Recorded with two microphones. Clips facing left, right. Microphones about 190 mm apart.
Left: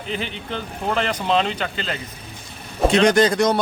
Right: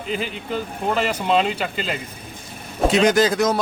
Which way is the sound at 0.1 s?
5° right (ahead or behind).